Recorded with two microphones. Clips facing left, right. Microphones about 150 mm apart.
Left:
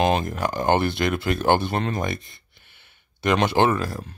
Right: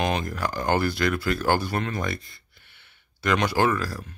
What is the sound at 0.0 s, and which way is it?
Speech, 25° left (ahead or behind).